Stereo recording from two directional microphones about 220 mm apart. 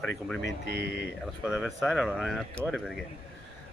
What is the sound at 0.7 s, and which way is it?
Speech, 45° right (ahead or behind).